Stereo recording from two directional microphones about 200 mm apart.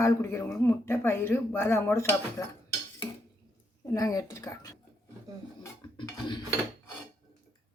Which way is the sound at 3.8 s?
20° left (ahead or behind).